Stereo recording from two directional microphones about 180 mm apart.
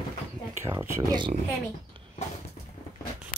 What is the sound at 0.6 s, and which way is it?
Speech, 15° right (ahead or behind).